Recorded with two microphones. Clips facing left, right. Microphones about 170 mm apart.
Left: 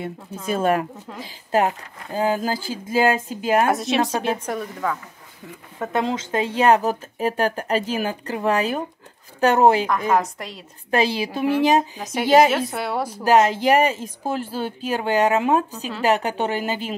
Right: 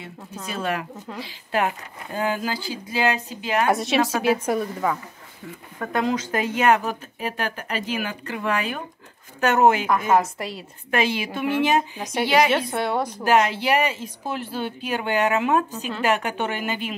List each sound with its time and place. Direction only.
0.0 s speech: 50° left (ahead or behind)
3.7 s a woman's voice: centre (ahead or behind)
5.8 s speech: 25° left (ahead or behind)
9.8 s a woman's voice: 5° right (ahead or behind)
10.9 s speech: 35° left (ahead or behind)
12.0 s a woman's voice: 5° left (ahead or behind)
13.2 s speech: 40° left (ahead or behind)